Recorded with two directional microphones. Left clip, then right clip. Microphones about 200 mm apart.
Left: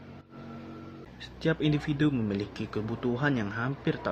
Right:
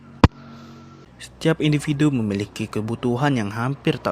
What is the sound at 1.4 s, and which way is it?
Speech, 40° right (ahead or behind).